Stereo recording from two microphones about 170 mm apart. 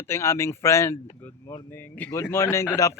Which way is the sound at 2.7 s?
20° left (ahead or behind).